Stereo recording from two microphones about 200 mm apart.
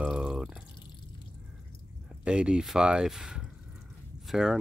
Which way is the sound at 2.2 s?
5° right (ahead or behind).